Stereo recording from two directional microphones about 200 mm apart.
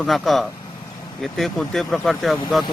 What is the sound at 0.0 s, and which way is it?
Speech, centre (ahead or behind).